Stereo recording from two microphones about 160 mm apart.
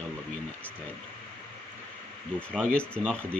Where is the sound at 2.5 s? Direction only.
5° left (ahead or behind).